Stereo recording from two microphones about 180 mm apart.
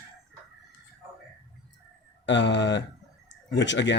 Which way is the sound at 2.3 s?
80° left.